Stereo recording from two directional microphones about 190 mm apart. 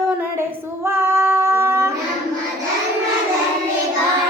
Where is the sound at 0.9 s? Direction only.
15° right (ahead or behind).